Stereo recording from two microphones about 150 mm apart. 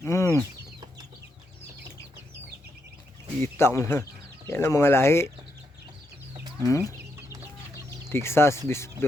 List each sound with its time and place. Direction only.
0.0 s chicken: 20° left (ahead or behind)
3.4 s speech: 15° left (ahead or behind)
6.3 s chicken: 25° right (ahead or behind)
7.7 s speech: 15° left (ahead or behind)